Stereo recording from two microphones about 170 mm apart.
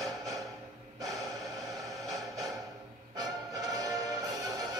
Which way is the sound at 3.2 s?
20° right (ahead or behind).